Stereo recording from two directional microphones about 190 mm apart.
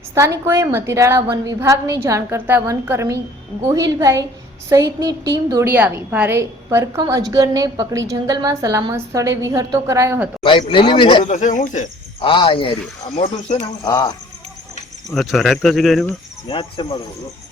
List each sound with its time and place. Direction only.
0.1 s a woman's voice: 15° right (ahead or behind)
10.4 s speech: 25° left (ahead or behind)
12.2 s speech: 25° left (ahead or behind)
13.8 s speech: 20° left (ahead or behind)
15.1 s speech: centre (ahead or behind)
16.5 s speech: 25° left (ahead or behind)